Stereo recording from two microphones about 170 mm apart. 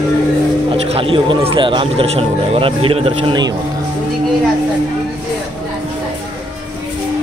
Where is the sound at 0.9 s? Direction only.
30° right (ahead or behind).